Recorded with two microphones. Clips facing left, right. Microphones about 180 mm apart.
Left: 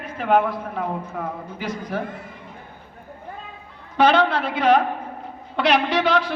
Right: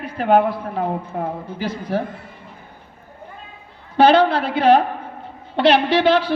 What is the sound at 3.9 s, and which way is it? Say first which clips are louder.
A woman's voice: right 4 dB; 35° right (ahead or behind).